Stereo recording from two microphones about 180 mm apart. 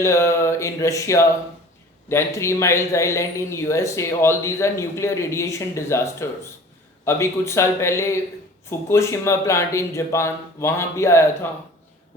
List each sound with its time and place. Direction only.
0.0 s a man's voice: 15° left (ahead or behind)